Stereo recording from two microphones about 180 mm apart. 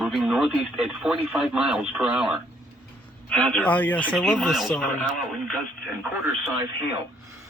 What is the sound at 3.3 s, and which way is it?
Speech, 5° left (ahead or behind).